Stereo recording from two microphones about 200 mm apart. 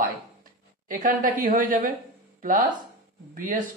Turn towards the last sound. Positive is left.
turn(degrees=-40)  # may be behind; listen again after turning